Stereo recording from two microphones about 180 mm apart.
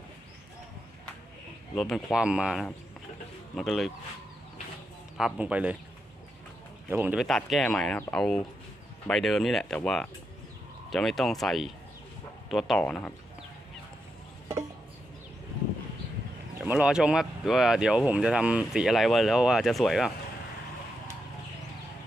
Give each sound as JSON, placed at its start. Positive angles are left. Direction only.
{"t": 1.7, "sound": "speech", "side_deg": 0}
{"t": 5.1, "sound": "speech", "side_deg": -5}
{"t": 6.9, "sound": "speech", "side_deg": -10}
{"t": 16.6, "sound": "speech", "side_deg": -5}